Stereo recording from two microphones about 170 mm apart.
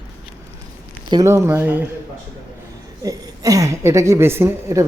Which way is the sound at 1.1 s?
15° right (ahead or behind).